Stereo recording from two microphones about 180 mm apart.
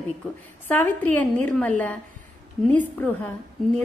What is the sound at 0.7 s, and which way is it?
A woman's voice, 10° left (ahead or behind).